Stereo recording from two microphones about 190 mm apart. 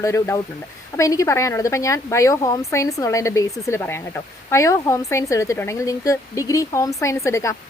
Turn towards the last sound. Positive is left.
turn(degrees=15)  # may be behind; listen again after turning